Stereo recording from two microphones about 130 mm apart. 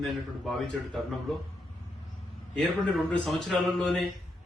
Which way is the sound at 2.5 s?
5° left (ahead or behind).